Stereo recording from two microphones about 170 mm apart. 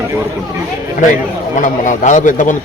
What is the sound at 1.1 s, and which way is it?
A man's voice, 50° left (ahead or behind).